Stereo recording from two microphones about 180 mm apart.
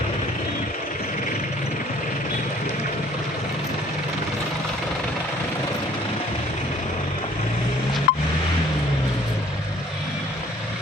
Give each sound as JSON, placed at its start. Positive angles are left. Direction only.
{"t": 8.1, "sound": "vehicle", "side_deg": 60}